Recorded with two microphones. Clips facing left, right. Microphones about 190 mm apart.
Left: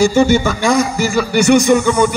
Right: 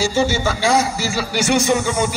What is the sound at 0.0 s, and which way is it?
A man's voice, 55° left (ahead or behind).